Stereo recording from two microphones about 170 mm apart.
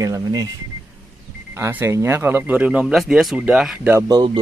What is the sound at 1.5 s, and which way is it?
Speech, 15° right (ahead or behind).